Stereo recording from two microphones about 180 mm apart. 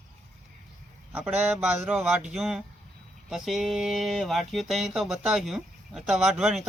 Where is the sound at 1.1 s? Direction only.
10° right (ahead or behind).